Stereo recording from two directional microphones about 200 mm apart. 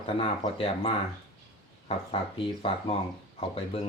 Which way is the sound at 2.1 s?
30° left (ahead or behind).